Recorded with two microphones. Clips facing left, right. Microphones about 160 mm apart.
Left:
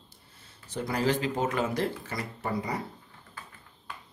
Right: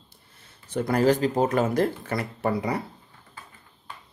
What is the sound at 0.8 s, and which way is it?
Speech, 45° right (ahead or behind).